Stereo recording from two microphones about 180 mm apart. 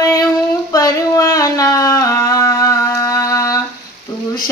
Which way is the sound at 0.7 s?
20° left (ahead or behind).